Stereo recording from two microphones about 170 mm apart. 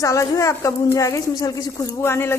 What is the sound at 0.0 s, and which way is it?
A woman's voice, 20° left (ahead or behind).